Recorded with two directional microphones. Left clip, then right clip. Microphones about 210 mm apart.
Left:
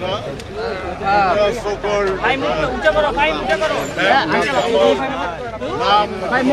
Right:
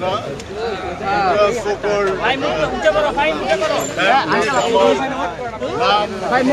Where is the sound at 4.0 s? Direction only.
Centre (ahead or behind).